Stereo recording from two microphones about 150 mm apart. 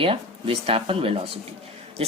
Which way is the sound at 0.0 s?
40° right (ahead or behind).